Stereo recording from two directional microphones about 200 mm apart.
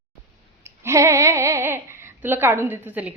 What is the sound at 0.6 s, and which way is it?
Speech, 15° right (ahead or behind).